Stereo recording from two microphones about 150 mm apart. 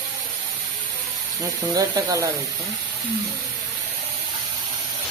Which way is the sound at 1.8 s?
20° right (ahead or behind).